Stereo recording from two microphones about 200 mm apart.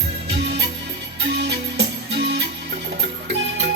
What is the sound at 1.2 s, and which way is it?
Music, 55° right (ahead or behind).